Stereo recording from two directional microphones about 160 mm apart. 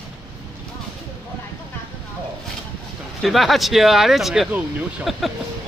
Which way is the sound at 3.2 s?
Centre (ahead or behind).